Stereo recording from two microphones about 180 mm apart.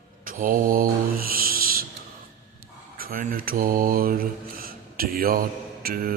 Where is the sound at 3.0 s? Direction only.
55° right (ahead or behind).